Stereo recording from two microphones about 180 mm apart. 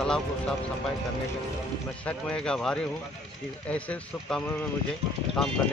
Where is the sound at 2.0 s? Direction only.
5° left (ahead or behind).